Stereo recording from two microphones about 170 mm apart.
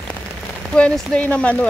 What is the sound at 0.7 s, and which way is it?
Speech, 5° left (ahead or behind).